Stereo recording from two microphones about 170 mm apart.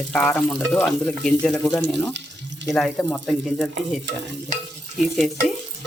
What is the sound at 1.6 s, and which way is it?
Speech, 20° left (ahead or behind).